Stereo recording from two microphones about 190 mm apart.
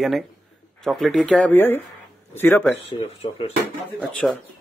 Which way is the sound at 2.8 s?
30° left (ahead or behind).